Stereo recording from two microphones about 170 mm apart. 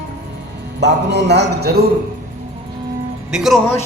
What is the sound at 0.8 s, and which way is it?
A man's voice, 85° right.